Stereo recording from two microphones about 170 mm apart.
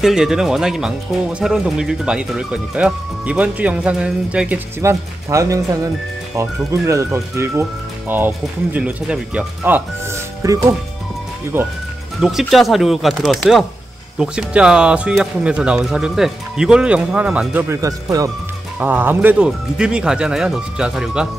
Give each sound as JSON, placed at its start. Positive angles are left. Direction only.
{"t": 0.0, "sound": "speech", "side_deg": -5}
{"t": 10.4, "sound": "speech", "side_deg": -20}
{"t": 12.2, "sound": "speech", "side_deg": 0}